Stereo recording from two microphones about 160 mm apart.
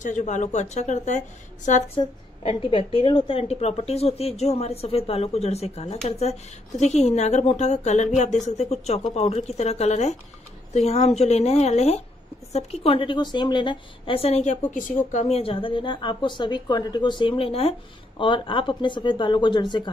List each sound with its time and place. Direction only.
0.0 s a woman's voice: 50° left (ahead or behind)
2.0 s a woman's voice: 30° left (ahead or behind)